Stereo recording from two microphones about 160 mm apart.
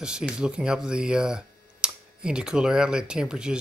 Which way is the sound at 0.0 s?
5° right (ahead or behind).